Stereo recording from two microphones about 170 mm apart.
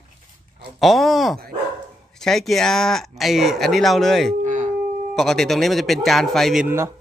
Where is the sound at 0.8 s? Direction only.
Centre (ahead or behind).